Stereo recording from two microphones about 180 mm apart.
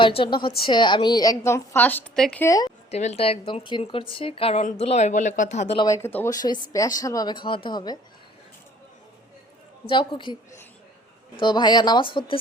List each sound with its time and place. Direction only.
0.0 s a woman's voice: 30° left (ahead or behind); by 2.5 s 5° left (ahead or behind)
2.5 s speech: 20° left (ahead or behind)
2.9 s a woman's voice: 40° left (ahead or behind)
5.9 s speech: 10° left (ahead or behind)
9.9 s speech: 25° left (ahead or behind)
11.3 s speech: 25° left (ahead or behind)